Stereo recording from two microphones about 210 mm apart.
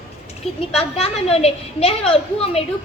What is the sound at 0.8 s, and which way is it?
A woman's voice, 30° left (ahead or behind).